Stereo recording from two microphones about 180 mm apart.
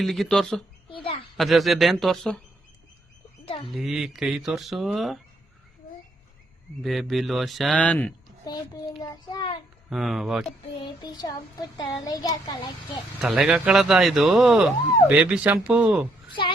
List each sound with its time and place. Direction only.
0.0 s speech: centre (ahead or behind)
0.9 s a sound: 30° left (ahead or behind)
1.4 s speech: centre (ahead or behind)
3.4 s bird: 30° left (ahead or behind)
3.8 s speech: centre (ahead or behind)
6.8 s speech: centre (ahead or behind)
8.4 s a child's voice: 20° left (ahead or behind)
9.9 s speech: centre (ahead or behind)
10.8 s a child's voice: 20° left (ahead or behind)
13.2 s speech: 5° right (ahead or behind)